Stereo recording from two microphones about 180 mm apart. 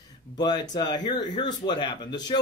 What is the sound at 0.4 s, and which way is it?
Speech, 25° left (ahead or behind).